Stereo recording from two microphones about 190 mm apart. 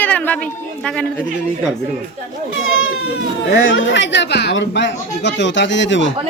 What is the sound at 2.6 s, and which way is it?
Baby cry, 90° left.